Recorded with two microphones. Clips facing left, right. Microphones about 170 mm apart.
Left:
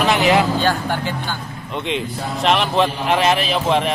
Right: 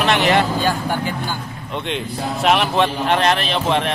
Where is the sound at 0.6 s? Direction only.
10° right (ahead or behind).